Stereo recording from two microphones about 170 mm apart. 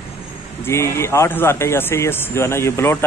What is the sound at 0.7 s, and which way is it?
Speech, 15° left (ahead or behind).